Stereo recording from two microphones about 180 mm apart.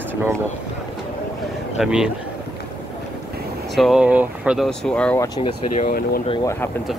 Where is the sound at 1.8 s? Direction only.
5° right (ahead or behind).